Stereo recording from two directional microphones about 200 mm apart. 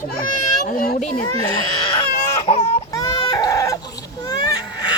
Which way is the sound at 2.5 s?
30° left (ahead or behind).